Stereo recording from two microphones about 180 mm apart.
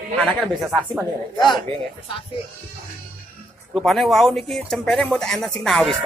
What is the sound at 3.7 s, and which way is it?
Speech, centre (ahead or behind).